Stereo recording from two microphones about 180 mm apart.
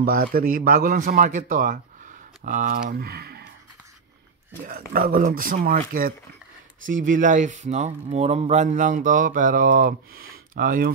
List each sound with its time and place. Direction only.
0.0 s speech: 55° right (ahead or behind)
4.6 s speech: 55° right (ahead or behind)